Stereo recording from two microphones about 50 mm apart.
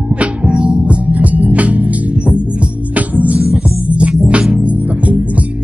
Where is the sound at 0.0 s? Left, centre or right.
Right.